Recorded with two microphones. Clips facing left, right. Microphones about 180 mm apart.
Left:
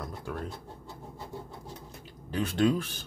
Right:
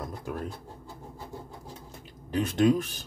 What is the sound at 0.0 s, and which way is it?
Pigeon, 20° right (ahead or behind).